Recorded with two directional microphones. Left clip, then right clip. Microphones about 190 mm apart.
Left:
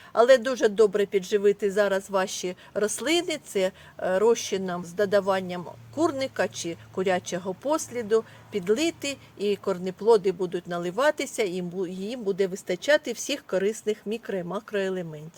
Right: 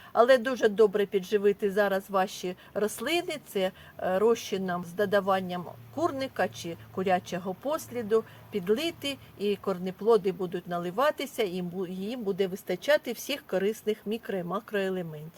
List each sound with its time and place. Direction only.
0.1 s speech: 30° left (ahead or behind)